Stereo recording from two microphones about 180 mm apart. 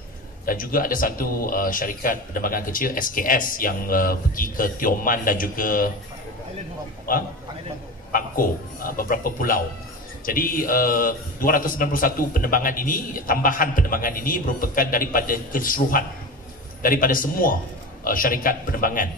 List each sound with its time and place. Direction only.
0.5 s a man's voice: 50° left (ahead or behind)
8.1 s a man's voice: 50° left (ahead or behind)